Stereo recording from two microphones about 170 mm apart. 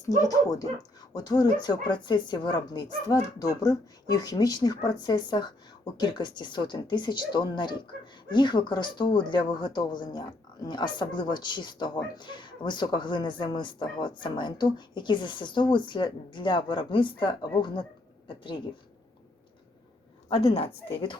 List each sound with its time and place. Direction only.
0.2 s speech: 20° left (ahead or behind)
20.3 s speech: 35° left (ahead or behind)